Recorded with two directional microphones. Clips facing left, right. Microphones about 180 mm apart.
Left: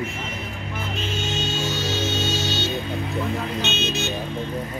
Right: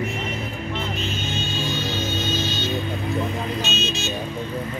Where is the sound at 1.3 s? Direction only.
80° left.